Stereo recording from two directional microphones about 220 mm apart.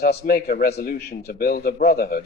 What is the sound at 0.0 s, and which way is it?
A man's voice, 45° left (ahead or behind).